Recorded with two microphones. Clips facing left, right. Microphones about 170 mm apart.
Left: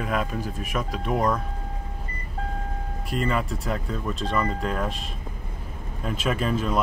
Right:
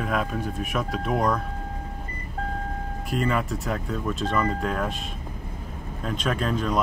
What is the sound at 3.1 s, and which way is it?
Speech, centre (ahead or behind).